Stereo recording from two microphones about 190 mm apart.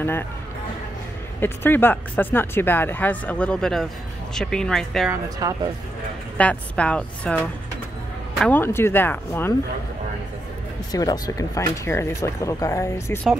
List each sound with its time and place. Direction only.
1.4 s speech: 10° left (ahead or behind)
5.1 s speech: 20° right (ahead or behind)
6.3 s speech: 5° left (ahead or behind)
10.9 s speech: 20° left (ahead or behind)